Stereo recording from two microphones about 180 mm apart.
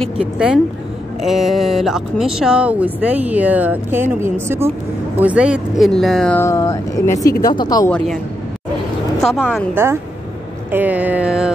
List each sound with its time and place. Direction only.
0.0 s speech: 5° right (ahead or behind)
6.4 s speech: 20° left (ahead or behind)
9.2 s speech: centre (ahead or behind)
10.7 s speech: 10° right (ahead or behind)